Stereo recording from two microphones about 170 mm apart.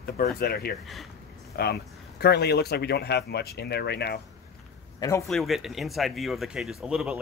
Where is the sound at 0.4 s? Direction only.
60° left (ahead or behind).